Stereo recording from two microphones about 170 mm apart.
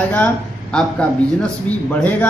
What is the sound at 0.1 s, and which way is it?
A man's voice, 5° left (ahead or behind).